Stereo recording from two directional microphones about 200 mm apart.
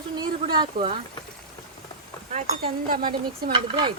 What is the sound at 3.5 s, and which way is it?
Speech, 25° right (ahead or behind).